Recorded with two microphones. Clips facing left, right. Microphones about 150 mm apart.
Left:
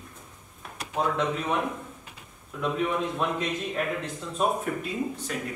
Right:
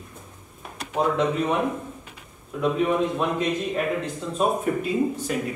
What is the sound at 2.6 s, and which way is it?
A man's voice, 5° right (ahead or behind).